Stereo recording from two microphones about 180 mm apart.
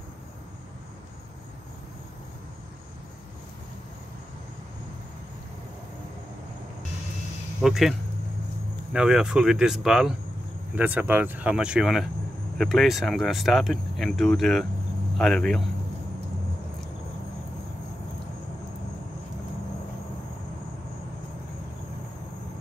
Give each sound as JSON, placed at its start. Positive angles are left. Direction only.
{"t": 7.6, "sound": "speech", "side_deg": 0}
{"t": 8.9, "sound": "speech", "side_deg": -5}